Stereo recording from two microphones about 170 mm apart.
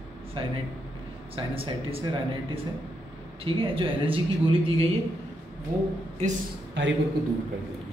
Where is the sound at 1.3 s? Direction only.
35° right (ahead or behind).